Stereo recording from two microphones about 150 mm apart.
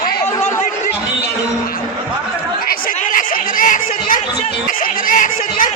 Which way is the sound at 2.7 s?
65° left (ahead or behind).